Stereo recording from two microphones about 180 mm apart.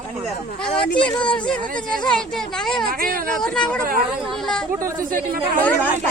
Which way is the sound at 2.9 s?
50° right (ahead or behind).